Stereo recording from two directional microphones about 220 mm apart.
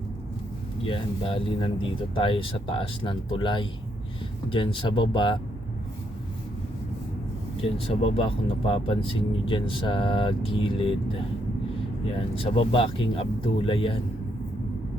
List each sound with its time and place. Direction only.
0.9 s speech: 25° left (ahead or behind)
7.5 s speech: 25° left (ahead or behind)
12.4 s speech: 25° left (ahead or behind)